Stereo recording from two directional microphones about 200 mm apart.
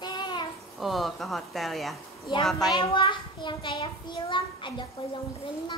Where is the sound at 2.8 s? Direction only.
25° left (ahead or behind).